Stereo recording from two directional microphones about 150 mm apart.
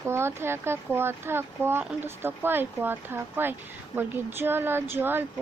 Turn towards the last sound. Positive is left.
turn(degrees=-15)  # may be behind; listen again after turning